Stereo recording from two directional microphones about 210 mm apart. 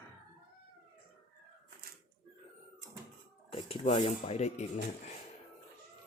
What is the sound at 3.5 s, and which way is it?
Speech, 30° left (ahead or behind).